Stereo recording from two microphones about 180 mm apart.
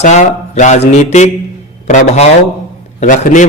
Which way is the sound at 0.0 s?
40° left (ahead or behind).